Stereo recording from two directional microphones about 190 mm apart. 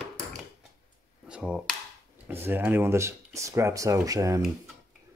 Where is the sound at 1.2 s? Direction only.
5° right (ahead or behind).